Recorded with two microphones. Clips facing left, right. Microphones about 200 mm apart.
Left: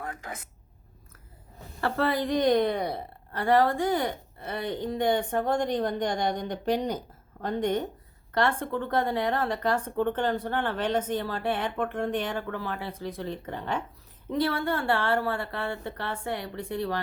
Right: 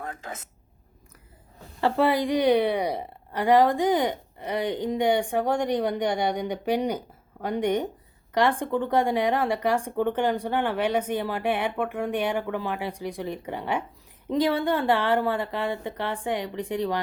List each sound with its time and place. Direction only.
0.0 s a woman's voice: 25° right (ahead or behind)
1.8 s speech: 15° right (ahead or behind)